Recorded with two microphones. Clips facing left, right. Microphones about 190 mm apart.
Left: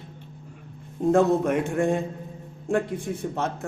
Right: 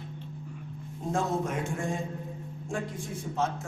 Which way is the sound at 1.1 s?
60° left (ahead or behind).